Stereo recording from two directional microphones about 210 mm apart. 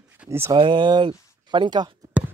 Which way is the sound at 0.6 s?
20° right (ahead or behind).